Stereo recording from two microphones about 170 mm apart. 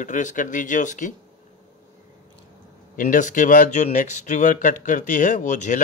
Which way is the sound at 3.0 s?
50° left (ahead or behind).